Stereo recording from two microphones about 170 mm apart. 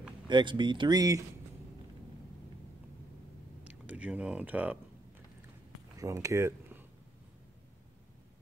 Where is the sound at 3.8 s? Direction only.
10° right (ahead or behind).